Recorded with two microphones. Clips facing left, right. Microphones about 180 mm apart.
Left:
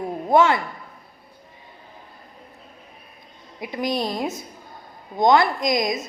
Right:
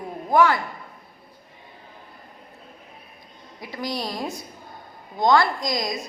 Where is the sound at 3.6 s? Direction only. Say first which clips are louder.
Left 5 dB; 20° left (ahead or behind).